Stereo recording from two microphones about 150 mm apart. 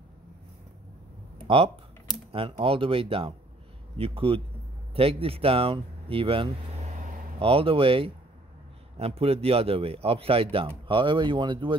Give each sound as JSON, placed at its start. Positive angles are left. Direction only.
{"t": 2.3, "sound": "speech", "side_deg": -35}